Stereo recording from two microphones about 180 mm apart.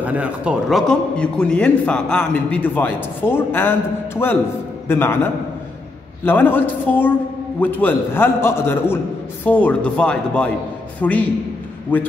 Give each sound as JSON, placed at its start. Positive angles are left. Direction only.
{"t": 0.0, "sound": "a man's voice", "side_deg": -10}